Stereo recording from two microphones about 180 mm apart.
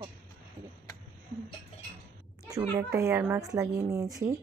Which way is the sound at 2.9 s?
10° right (ahead or behind).